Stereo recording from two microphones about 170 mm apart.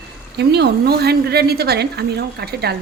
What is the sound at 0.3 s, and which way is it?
A woman's voice, 80° right.